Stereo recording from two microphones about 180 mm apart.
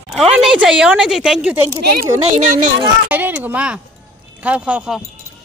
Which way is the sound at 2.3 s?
45° right (ahead or behind).